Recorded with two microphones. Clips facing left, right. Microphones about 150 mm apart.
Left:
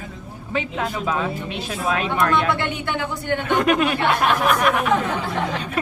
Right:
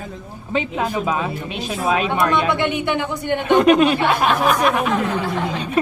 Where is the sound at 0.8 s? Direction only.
15° right (ahead or behind).